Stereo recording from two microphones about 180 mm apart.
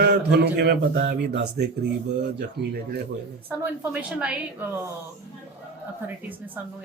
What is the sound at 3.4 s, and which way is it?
A woman's voice, 10° right (ahead or behind).